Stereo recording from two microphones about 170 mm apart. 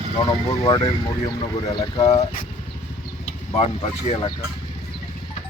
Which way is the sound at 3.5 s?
35° left (ahead or behind).